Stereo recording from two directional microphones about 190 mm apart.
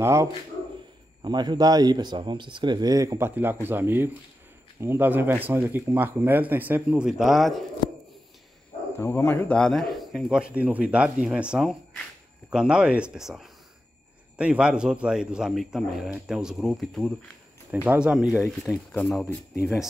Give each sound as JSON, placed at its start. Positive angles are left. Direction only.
{"t": 0.0, "sound": "speech", "side_deg": -15}
{"t": 8.9, "sound": "a man's voice", "side_deg": 15}